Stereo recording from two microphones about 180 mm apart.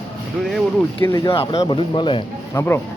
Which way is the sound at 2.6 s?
15° left (ahead or behind).